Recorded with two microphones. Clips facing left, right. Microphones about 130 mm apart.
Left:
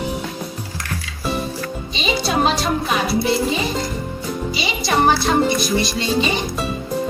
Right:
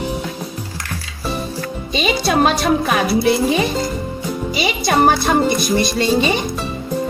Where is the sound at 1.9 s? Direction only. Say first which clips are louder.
Right 4 dB; 55° right (ahead or behind).